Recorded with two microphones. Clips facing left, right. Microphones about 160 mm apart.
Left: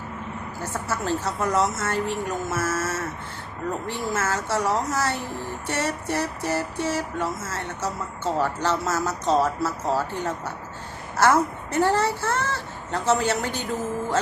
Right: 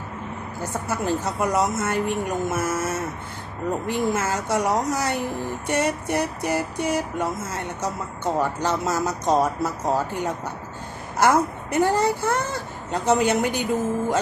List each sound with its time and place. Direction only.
0.7 s speech: 15° right (ahead or behind)